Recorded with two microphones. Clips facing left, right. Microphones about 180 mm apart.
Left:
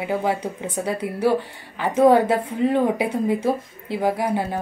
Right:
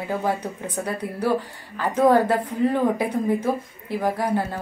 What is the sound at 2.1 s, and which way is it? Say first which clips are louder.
Speech: left 2 dB; 20° left (ahead or behind).